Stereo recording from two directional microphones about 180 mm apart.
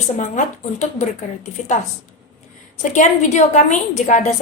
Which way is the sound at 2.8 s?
45° left (ahead or behind).